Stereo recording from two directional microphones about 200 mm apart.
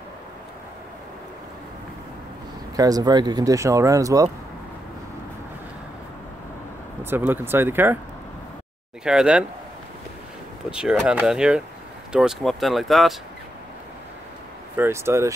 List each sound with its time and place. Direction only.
2.7 s speech: 20° right (ahead or behind)
7.0 s speech: 10° right (ahead or behind)
9.0 s speech: 5° right (ahead or behind)
10.7 s speech: 5° right (ahead or behind)
14.8 s speech: 15° right (ahead or behind)